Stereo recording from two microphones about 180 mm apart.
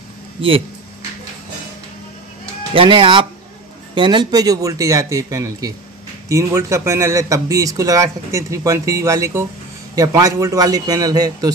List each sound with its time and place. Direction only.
2.7 s speech: 30° right (ahead or behind)